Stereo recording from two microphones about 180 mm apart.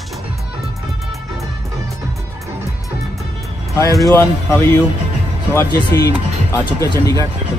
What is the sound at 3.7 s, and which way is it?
Speech, 20° left (ahead or behind).